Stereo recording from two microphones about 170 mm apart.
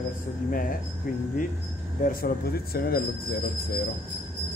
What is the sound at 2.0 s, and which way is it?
Speech, 60° left (ahead or behind).